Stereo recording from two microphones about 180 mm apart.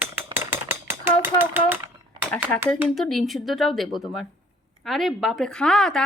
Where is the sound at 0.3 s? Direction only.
15° right (ahead or behind).